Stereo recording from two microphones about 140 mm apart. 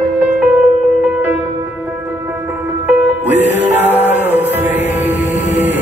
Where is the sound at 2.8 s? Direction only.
15° right (ahead or behind).